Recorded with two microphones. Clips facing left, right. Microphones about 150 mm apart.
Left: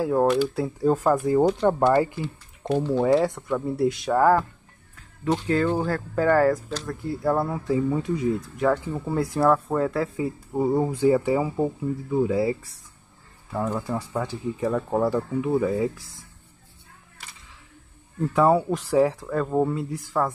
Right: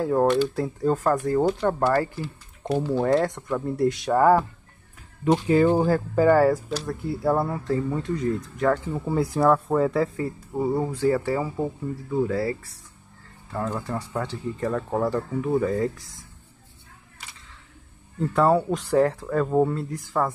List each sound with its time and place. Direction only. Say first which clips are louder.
0.0 s speech: even; centre (ahead or behind)
2.2 s speech: left 1 dB; 5° right (ahead or behind)
5.2 s speech: right 4 dB; 15° right (ahead or behind); by 10.2 s centre (ahead or behind)
10.2 s speech: left 2 dB; 15° left (ahead or behind)
18.3 s speech: left 1 dB; 5° left (ahead or behind)